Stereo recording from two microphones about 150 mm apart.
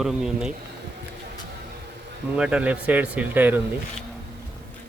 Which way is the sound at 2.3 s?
5° right (ahead or behind).